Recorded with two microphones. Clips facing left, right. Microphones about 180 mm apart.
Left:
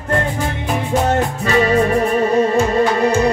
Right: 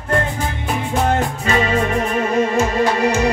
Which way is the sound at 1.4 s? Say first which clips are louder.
Left 5 dB; 35° left (ahead or behind).